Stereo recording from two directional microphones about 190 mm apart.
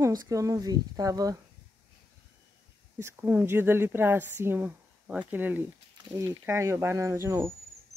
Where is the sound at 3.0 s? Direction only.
10° right (ahead or behind).